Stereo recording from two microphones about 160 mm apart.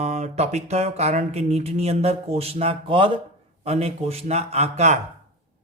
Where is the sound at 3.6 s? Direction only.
40° right (ahead or behind).